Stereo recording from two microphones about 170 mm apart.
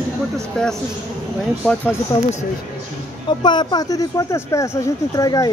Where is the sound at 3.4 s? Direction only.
25° left (ahead or behind).